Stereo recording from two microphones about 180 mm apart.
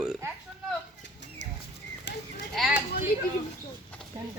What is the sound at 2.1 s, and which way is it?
Sheep, 75° left (ahead or behind).